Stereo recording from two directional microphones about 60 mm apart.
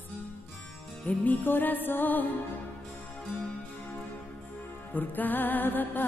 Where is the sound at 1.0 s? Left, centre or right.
Left.